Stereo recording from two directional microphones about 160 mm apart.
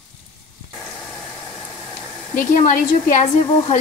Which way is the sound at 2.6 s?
55° left (ahead or behind).